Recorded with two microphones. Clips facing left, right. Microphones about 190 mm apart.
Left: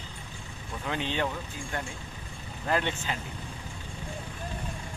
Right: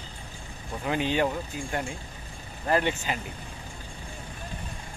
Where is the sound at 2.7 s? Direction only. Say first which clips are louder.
Right 4 dB; 10° right (ahead or behind).